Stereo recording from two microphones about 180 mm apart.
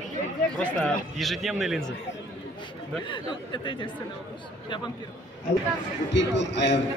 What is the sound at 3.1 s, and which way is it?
Speech, 25° left (ahead or behind).